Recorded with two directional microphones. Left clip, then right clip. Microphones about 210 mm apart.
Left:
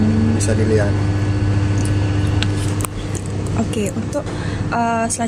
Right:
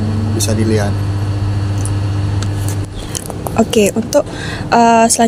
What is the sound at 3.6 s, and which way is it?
A woman's voice, 45° right (ahead or behind).